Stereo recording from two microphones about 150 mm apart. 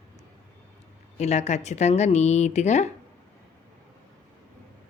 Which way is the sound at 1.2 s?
45° left (ahead or behind).